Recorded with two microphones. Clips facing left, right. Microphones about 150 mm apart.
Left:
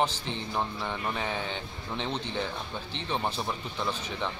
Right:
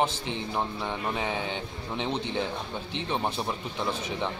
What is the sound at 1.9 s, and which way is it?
A man's voice, 10° right (ahead or behind).